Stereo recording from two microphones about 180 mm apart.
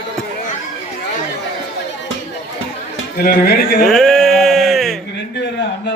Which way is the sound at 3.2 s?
55° left (ahead or behind).